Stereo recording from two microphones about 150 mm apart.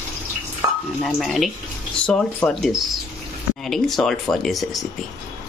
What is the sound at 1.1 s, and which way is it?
Speech, centre (ahead or behind).